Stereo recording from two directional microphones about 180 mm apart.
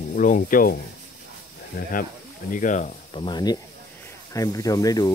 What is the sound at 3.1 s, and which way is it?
Speech, 25° left (ahead or behind).